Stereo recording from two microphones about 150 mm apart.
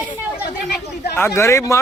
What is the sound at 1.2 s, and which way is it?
Speech, 20° left (ahead or behind).